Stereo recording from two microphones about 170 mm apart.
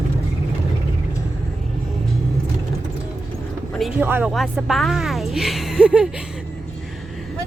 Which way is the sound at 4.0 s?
10° right (ahead or behind).